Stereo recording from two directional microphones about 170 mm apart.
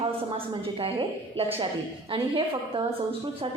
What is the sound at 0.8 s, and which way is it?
A man's voice, 35° right (ahead or behind).